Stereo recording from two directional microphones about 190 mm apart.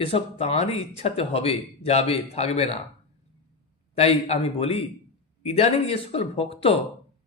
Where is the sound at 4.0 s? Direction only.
35° left (ahead or behind).